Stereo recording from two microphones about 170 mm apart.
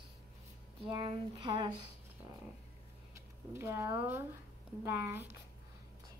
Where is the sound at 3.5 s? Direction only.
15° right (ahead or behind).